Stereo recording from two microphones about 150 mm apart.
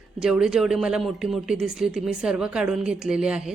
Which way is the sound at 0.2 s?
5° right (ahead or behind).